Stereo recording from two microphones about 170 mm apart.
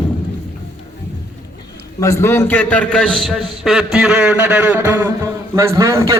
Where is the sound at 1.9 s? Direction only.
15° left (ahead or behind); by 5.1 s 10° right (ahead or behind).